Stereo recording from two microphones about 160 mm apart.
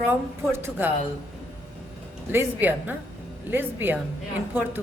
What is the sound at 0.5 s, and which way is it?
Speech, 15° right (ahead or behind).